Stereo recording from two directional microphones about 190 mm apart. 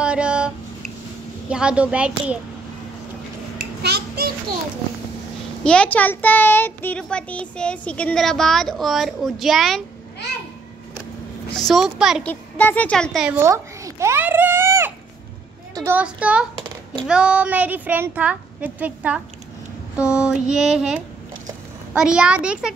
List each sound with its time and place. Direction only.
0.0 s a sound: 5° right (ahead or behind)
1.5 s a child's voice: 5° right (ahead or behind)
3.8 s a child's voice: 60° right (ahead or behind)
5.6 s a child's voice: 5° left (ahead or behind)
11.5 s a child's voice: centre (ahead or behind)
12.3 s speech: 10° left (ahead or behind)
13.3 s a child's voice: 15° right (ahead or behind)